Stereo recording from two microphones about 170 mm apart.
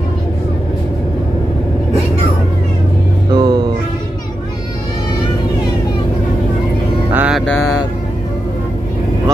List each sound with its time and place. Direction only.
3.3 s music: 25° right (ahead or behind)
7.1 s mantra: 10° right (ahead or behind)